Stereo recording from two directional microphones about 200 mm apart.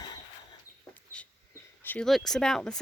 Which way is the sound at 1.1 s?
5° left (ahead or behind).